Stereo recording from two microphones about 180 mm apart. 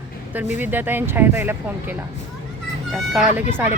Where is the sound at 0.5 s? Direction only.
10° right (ahead or behind).